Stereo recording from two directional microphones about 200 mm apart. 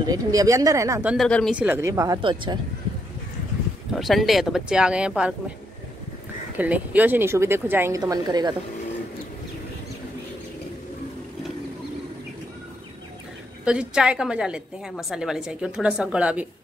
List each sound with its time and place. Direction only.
0.0 s speech: 20° right (ahead or behind)
1.1 s speech: centre (ahead or behind); by 2.6 s 25° right (ahead or behind)
3.9 s a woman's voice: centre (ahead or behind)
6.6 s speech: 10° right (ahead or behind)
13.7 s a woman's voice: 5° right (ahead or behind)